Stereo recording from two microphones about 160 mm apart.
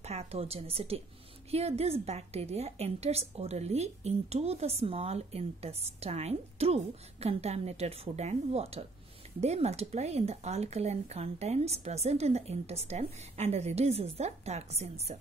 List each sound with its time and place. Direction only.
0.0 s a woman's voice: 40° right (ahead or behind)